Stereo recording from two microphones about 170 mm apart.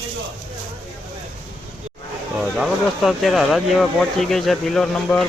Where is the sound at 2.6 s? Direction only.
Centre (ahead or behind).